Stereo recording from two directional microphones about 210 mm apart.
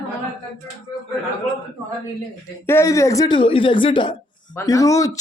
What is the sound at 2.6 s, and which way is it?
Speech, 15° left (ahead or behind).